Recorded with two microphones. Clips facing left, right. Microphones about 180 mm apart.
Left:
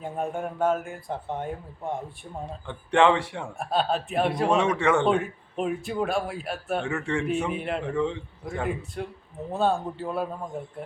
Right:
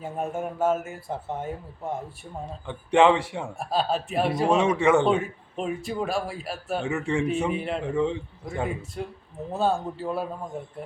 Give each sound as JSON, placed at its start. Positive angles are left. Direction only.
{"t": 0.0, "sound": "a man's voice", "side_deg": -5}
{"t": 2.9, "sound": "speech", "side_deg": -20}
{"t": 3.2, "sound": "a man's voice", "side_deg": -10}